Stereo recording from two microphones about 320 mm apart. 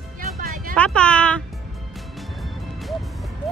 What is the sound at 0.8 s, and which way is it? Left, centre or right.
Speech, centre.